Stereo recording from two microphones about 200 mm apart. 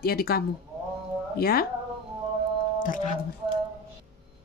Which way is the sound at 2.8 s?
40° left (ahead or behind).